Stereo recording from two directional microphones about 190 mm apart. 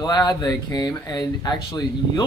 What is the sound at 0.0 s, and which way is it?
Speech, 20° left (ahead or behind).